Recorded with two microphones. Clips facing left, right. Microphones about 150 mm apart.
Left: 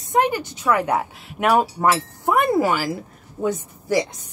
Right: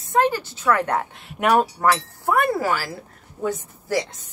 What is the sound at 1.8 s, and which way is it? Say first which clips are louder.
A woman's voice: left 1 dB; 20° left (ahead or behind).